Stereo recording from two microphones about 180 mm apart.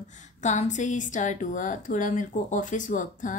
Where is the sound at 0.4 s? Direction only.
40° left (ahead or behind).